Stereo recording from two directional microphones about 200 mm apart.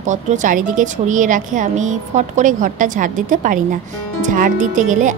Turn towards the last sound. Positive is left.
turn(degrees=-40)  # may be behind; listen again after turning